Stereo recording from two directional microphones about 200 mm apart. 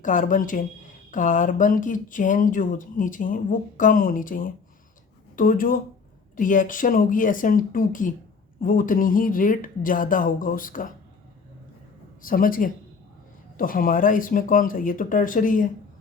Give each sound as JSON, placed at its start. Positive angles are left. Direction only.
{"t": 0.0, "sound": "speech", "side_deg": 40}
{"t": 12.2, "sound": "speech", "side_deg": 45}